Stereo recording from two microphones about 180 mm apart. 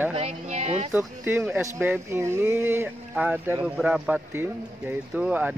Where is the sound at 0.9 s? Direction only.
10° right (ahead or behind).